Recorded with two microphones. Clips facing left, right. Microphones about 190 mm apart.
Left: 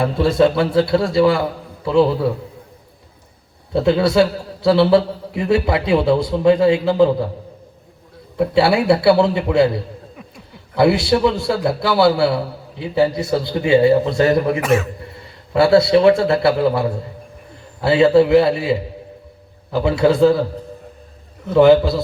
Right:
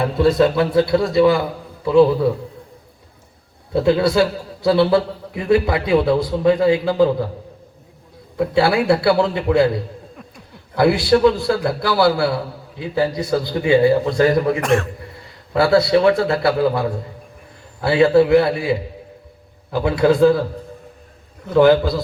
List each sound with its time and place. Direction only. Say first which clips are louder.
0.0 s a man's voice: even; 25° left (ahead or behind)
3.7 s a man's voice: even; 25° left (ahead or behind)
8.4 s a man's voice: left 1 dB; 25° left (ahead or behind)
10.8 s a man's voice: even; 25° left (ahead or behind)
14.6 s speech: left 1 dB; 5° left (ahead or behind)
15.2 s a man's voice: left 2 dB; 25° left (ahead or behind)
21.5 s a man's voice: left 2 dB; 25° left (ahead or behind)